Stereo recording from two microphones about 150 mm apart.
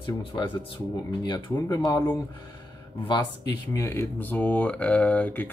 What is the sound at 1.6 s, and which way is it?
Speech, 25° left (ahead or behind).